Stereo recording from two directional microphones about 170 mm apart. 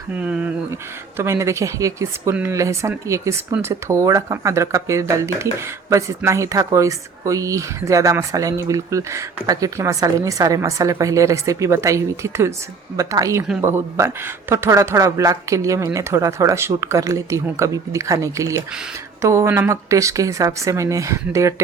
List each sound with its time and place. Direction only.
0.1 s a woman's voice: 10° right (ahead or behind)